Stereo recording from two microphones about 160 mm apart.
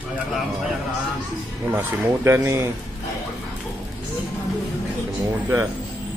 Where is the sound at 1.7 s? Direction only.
15° right (ahead or behind).